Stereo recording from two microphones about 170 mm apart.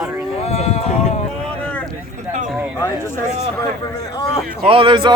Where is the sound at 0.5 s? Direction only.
40° left (ahead or behind).